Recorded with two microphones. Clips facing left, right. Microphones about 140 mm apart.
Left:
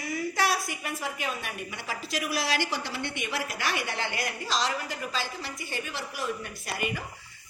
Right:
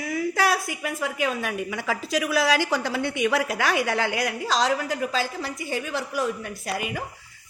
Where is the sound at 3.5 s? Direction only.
85° right.